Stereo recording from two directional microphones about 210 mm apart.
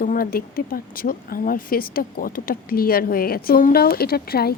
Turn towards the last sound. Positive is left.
turn(degrees=45)  # may be behind; listen again after turning